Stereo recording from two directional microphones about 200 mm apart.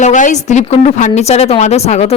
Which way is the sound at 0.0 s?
35° left (ahead or behind).